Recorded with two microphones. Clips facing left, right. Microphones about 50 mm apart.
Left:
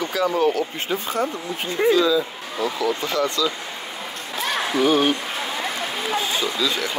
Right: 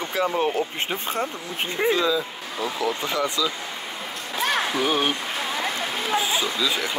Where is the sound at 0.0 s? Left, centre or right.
Right.